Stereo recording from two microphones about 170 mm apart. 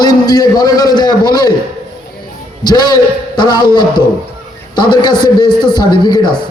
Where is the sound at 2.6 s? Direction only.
25° left (ahead or behind).